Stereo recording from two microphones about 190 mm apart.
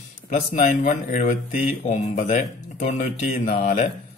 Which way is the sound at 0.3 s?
40° left (ahead or behind).